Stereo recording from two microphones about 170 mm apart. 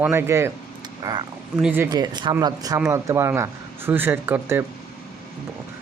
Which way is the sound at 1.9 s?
25° right (ahead or behind).